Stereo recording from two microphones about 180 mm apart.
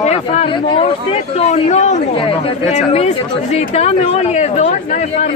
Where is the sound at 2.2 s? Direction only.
30° left (ahead or behind).